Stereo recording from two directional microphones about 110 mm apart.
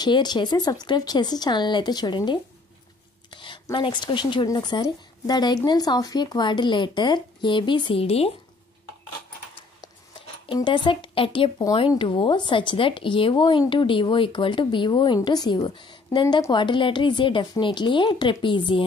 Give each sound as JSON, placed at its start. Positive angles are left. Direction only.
{"t": 0.0, "sound": "speech", "side_deg": 40}
{"t": 3.3, "sound": "a sound", "side_deg": 45}
{"t": 3.7, "sound": "a woman's voice", "side_deg": 45}
{"t": 8.0, "sound": "speech", "side_deg": 65}
{"t": 10.5, "sound": "a woman's voice", "side_deg": 45}